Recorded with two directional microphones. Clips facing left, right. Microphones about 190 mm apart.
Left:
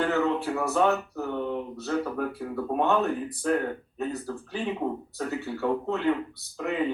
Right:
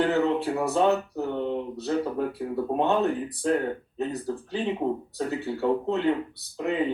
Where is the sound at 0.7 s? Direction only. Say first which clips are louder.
Right 1 dB; 20° right (ahead or behind).